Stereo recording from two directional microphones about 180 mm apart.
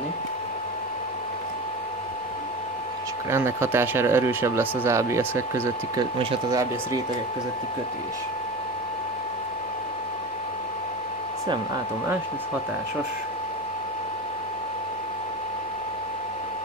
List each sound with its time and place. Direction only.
3.3 s speech: 15° right (ahead or behind)
5.9 s speech: 30° right (ahead or behind)
6.5 s speech: 20° right (ahead or behind)